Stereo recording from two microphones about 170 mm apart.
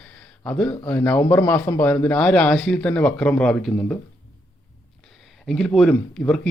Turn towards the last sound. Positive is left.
turn(degrees=5)  # may be behind; listen again after turning